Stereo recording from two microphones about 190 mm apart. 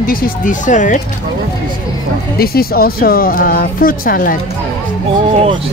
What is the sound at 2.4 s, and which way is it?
Speech, 50° left (ahead or behind).